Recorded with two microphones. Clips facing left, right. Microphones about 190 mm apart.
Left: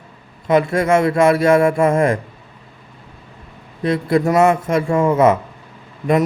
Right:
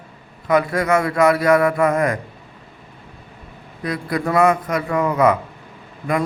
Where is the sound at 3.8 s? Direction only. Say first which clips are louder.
Left 6 dB; 25° left (ahead or behind).